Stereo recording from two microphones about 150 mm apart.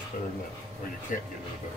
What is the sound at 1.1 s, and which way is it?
Speech, 65° left (ahead or behind).